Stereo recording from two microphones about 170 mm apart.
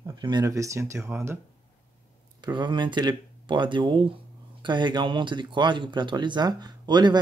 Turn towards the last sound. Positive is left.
turn(degrees=-25)  # may be behind; listen again after turning